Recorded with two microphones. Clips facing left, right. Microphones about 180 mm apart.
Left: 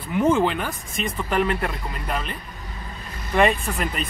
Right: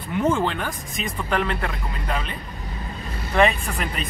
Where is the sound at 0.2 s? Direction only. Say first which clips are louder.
Left 3 dB; 10° left (ahead or behind).